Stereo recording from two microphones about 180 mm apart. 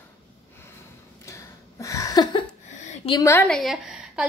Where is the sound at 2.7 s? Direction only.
40° left (ahead or behind).